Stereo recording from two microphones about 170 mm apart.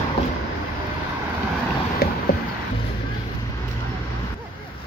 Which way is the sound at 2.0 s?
65° left (ahead or behind).